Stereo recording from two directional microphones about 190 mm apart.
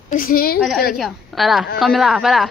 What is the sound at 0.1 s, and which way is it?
Speech, 50° left (ahead or behind).